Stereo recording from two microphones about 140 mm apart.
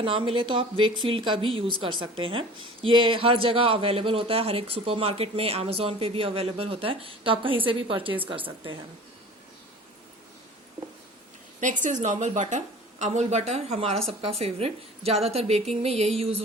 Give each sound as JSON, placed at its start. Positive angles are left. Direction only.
{"t": 0.0, "sound": "a man's voice", "side_deg": -40}
{"t": 11.6, "sound": "a woman's voice", "side_deg": -65}